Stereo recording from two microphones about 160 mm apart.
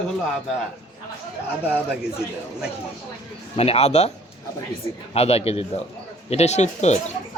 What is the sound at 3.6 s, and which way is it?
Speech, 40° left (ahead or behind).